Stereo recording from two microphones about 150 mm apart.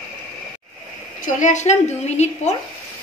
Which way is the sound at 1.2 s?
55° left (ahead or behind).